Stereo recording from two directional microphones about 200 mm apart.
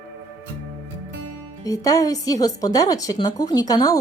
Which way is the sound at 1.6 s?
15° left (ahead or behind).